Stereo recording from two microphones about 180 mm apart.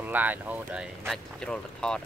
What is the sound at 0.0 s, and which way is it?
Speech, 10° right (ahead or behind).